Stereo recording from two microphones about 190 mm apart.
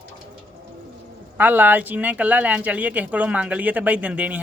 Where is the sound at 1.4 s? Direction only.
10° right (ahead or behind).